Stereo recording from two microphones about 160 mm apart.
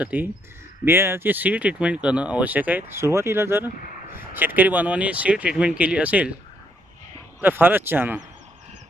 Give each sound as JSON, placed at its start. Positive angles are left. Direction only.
{"t": 0.0, "sound": "speech", "side_deg": -10}
{"t": 7.4, "sound": "speech", "side_deg": -10}